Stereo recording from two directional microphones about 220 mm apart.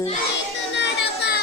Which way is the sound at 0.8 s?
50° left (ahead or behind).